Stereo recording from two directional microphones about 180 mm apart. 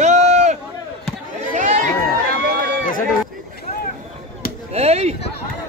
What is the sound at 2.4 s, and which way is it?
Run, 60° right (ahead or behind).